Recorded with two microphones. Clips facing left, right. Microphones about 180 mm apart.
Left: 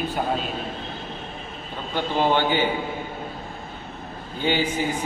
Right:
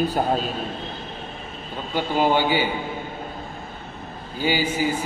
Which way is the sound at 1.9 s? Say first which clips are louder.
Right 1 dB; 10° right (ahead or behind).